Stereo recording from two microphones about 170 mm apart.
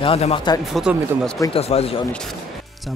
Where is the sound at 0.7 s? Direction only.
Centre (ahead or behind).